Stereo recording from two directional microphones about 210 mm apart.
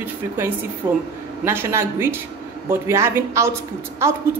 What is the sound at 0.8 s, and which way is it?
Speech, 10° right (ahead or behind).